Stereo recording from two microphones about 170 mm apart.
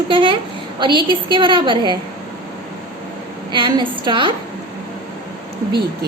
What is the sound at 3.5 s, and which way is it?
Speech, 30° right (ahead or behind).